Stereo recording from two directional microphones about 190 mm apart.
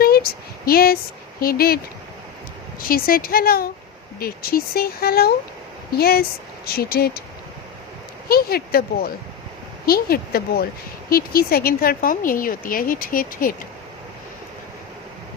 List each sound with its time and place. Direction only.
0.0 s a sound: 50° left (ahead or behind)
1.4 s a woman's voice: 50° left (ahead or behind)
2.9 s a woman's voice: 50° left (ahead or behind)
8.3 s a woman's voice: 55° left (ahead or behind)